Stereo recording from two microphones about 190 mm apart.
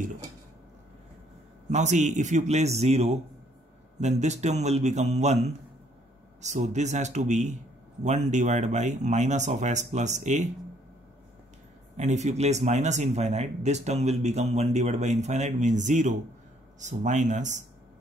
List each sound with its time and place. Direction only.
1.7 s speech: 40° right (ahead or behind)
12.0 s speech: 35° right (ahead or behind)